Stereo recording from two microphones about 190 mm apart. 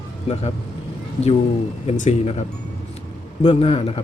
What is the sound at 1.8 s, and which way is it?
Speech, 35° left (ahead or behind).